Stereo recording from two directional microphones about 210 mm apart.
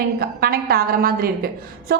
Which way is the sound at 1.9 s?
50° right (ahead or behind).